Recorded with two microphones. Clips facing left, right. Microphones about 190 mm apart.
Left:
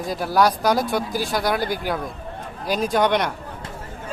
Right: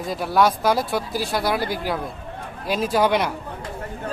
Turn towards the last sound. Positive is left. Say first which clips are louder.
# even
turn(degrees=-5)  # may be behind; listen again after turning